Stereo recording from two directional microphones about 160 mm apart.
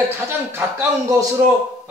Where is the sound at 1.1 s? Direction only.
20° right (ahead or behind).